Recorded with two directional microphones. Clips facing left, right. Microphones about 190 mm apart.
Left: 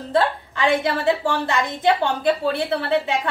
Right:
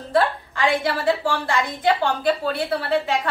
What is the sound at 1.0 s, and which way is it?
A woman's voice, 20° left (ahead or behind).